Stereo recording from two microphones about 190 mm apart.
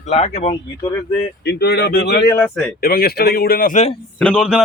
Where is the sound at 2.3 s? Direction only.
10° left (ahead or behind).